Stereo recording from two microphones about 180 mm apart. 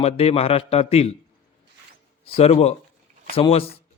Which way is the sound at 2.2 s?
30° left (ahead or behind).